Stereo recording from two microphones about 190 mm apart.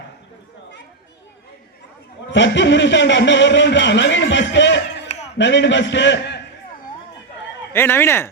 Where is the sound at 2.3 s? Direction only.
70° left (ahead or behind).